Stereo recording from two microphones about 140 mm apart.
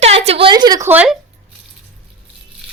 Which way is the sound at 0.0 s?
45° right (ahead or behind).